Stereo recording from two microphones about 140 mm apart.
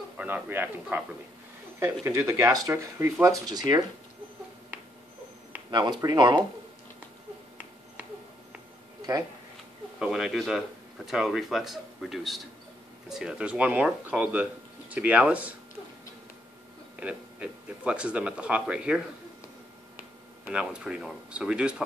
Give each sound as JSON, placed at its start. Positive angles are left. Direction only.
{"t": 0.2, "sound": "speech", "side_deg": -15}
{"t": 5.7, "sound": "speech", "side_deg": -30}
{"t": 9.9, "sound": "speech", "side_deg": -5}
{"t": 17.0, "sound": "speech", "side_deg": -10}
{"t": 20.4, "sound": "speech", "side_deg": -5}